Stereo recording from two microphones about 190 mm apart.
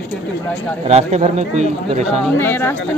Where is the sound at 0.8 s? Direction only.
35° right (ahead or behind).